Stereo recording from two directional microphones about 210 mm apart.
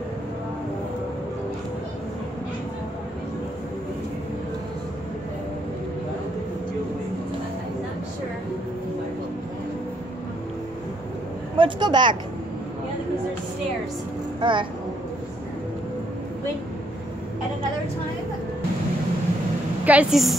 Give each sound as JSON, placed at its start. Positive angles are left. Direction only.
{"t": 11.5, "sound": "a woman's voice", "side_deg": -20}
{"t": 14.4, "sound": "speech", "side_deg": -25}
{"t": 19.8, "sound": "a woman's voice", "side_deg": -5}